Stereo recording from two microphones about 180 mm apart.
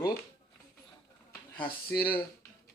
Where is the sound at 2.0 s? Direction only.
10° left (ahead or behind).